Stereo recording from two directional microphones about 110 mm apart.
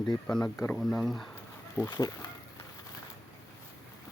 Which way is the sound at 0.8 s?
Centre (ahead or behind).